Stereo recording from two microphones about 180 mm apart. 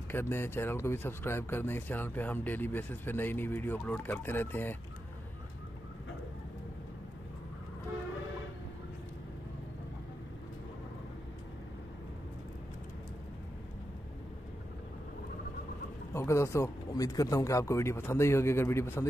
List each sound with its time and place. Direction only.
0.1 s speech: 15° left (ahead or behind)
16.1 s speech: 15° left (ahead or behind)